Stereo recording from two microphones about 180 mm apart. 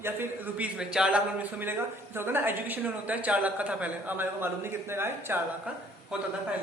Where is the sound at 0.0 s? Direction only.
10° right (ahead or behind).